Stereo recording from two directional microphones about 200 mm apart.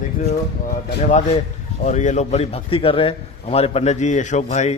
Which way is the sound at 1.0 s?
35° left (ahead or behind).